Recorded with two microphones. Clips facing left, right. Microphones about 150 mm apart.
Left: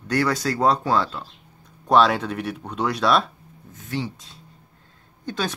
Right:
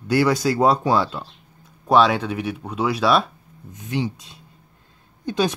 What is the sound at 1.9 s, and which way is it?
Speech, centre (ahead or behind).